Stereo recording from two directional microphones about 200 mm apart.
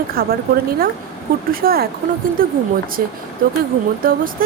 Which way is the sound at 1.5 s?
50° right (ahead or behind).